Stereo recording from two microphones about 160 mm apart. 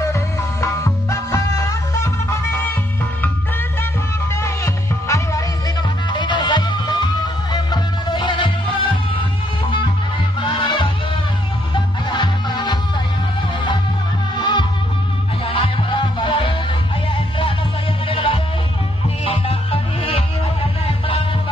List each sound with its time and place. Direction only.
0.1 s music: 20° left (ahead or behind)
4.4 s music: 20° left (ahead or behind)
6.1 s music: 30° left (ahead or behind)
10.4 s music: 30° left (ahead or behind)
14.3 s music: 30° left (ahead or behind)
18.0 s music: 35° left (ahead or behind)